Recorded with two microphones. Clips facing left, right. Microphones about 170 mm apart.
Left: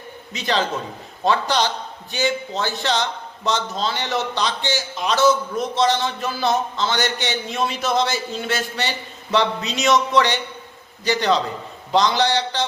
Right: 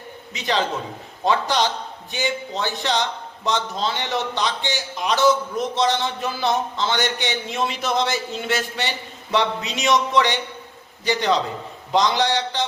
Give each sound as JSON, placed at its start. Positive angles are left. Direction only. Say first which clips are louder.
{"t": 0.3, "sound": "a man's voice", "louder": "left 1 dB", "side_deg": -15}